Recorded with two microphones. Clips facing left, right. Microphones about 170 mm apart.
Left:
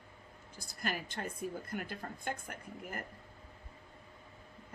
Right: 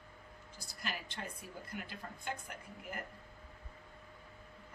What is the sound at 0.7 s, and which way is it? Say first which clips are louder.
A woman's voice: left 5 dB; 50° left (ahead or behind).